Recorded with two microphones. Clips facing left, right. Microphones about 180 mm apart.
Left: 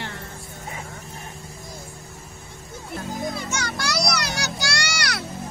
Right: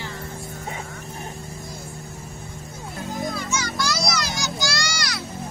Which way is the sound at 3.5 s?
65° left (ahead or behind).